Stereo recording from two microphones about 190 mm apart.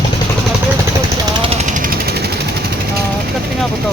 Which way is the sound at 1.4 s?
35° right (ahead or behind).